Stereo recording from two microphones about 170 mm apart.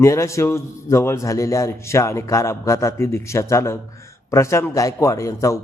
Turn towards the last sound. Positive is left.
turn(degrees=20)  # may be behind; listen again after turning